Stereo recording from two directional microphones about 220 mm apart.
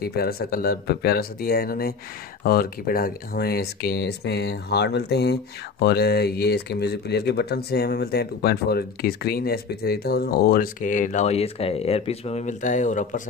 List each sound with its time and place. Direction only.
0.0 s speech: 45° left (ahead or behind)